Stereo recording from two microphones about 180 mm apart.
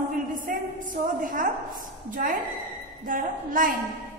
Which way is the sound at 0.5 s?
50° right (ahead or behind).